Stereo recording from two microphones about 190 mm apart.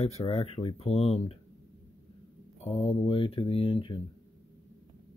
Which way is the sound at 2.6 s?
30° left (ahead or behind).